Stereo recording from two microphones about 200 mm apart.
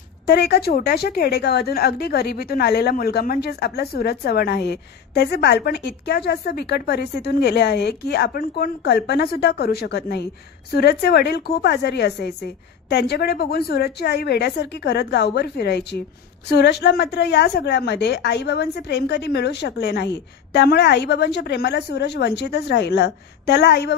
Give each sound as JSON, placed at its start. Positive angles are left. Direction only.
{"t": 0.3, "sound": "a woman's voice", "side_deg": 55}